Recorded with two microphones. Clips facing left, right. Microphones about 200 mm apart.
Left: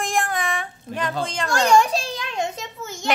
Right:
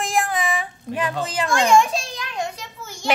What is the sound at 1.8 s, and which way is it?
Children playing, 35° left (ahead or behind).